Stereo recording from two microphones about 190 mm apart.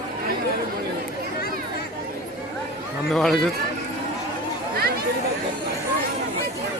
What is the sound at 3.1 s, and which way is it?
Speech, centre (ahead or behind).